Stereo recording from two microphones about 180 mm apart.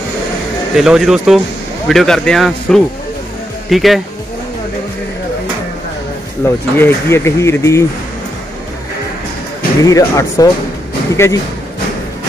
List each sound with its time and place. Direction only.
0.7 s speech: 5° right (ahead or behind)
6.4 s speech: 15° left (ahead or behind)
9.8 s speech: 20° left (ahead or behind)